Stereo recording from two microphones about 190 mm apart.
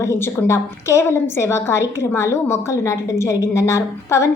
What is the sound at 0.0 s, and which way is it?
A woman's voice, 15° left (ahead or behind).